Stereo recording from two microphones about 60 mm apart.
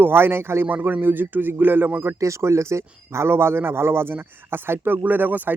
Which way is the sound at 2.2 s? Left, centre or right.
Right.